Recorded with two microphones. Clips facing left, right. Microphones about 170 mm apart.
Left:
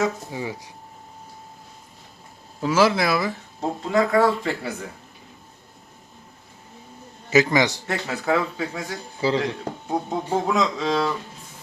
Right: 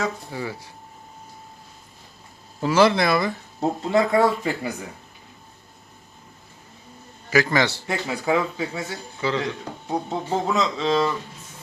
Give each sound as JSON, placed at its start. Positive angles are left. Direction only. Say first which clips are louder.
{"t": 0.3, "sound": "a man's voice", "louder": "even", "side_deg": 20}
{"t": 2.6, "sound": "speech", "louder": "right 1 dB", "side_deg": 0}
{"t": 3.6, "sound": "speech", "louder": "right 1 dB", "side_deg": -25}
{"t": 4.4, "sound": "speech", "louder": "right 1 dB", "side_deg": -10}
{"t": 7.3, "sound": "a man's voice", "louder": "left 2 dB", "side_deg": 20}
{"t": 7.9, "sound": "speech", "louder": "even", "side_deg": -10}
{"t": 9.2, "sound": "speech", "louder": "left 3 dB", "side_deg": 30}
{"t": 9.9, "sound": "speech", "louder": "left 1 dB", "side_deg": 5}